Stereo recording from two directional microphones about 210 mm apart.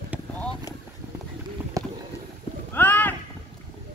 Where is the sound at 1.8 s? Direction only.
15° right (ahead or behind).